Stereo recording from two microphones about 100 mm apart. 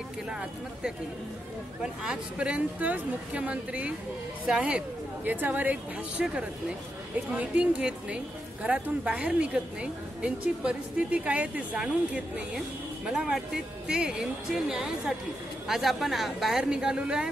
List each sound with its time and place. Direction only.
0.3 s a woman's voice: 10° right (ahead or behind)
7.3 s a woman's voice: 10° right (ahead or behind)